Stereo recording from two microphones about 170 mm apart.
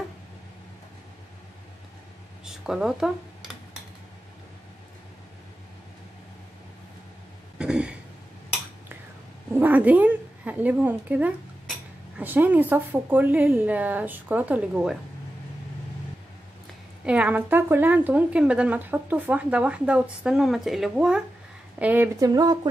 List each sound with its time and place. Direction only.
2.4 s speech: 5° right (ahead or behind)
7.5 s throat clearing: 5° right (ahead or behind)
9.5 s a woman's voice: 10° right (ahead or behind)
17.0 s a woman's voice: 5° right (ahead or behind); by 22.6 s 25° right (ahead or behind)